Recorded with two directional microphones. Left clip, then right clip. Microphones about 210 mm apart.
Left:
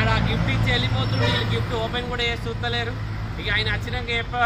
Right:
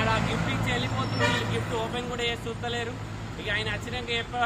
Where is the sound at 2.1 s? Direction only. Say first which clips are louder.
Left 4 dB; centre (ahead or behind).